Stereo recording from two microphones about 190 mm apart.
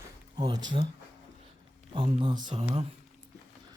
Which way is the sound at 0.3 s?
25° right (ahead or behind).